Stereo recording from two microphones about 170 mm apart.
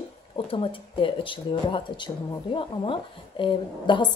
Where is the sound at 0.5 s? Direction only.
30° left (ahead or behind).